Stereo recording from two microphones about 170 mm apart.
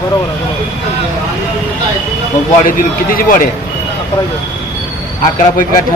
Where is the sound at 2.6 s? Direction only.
55° left (ahead or behind).